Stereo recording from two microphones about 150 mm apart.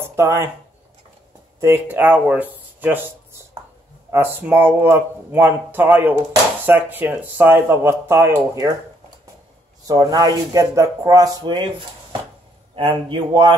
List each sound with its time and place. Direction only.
0.0 s a sound: 20° right (ahead or behind)
1.6 s speech: 15° right (ahead or behind)
4.1 s speech: 15° right (ahead or behind)
9.8 s a man's voice: 25° right (ahead or behind)